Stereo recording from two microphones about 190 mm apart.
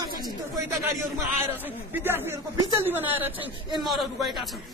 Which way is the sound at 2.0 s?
10° right (ahead or behind).